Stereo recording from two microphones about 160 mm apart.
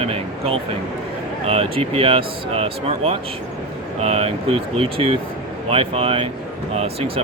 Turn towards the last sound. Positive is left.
turn(degrees=-40)  # may be behind; listen again after turning